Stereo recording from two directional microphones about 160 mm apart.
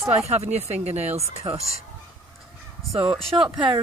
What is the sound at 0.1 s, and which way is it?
Speech, 45° right (ahead or behind).